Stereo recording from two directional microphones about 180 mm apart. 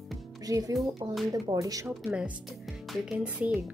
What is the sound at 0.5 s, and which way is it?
Speech, 20° right (ahead or behind).